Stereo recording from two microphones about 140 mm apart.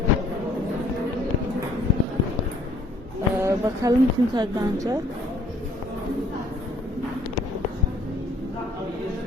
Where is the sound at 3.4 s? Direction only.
25° right (ahead or behind).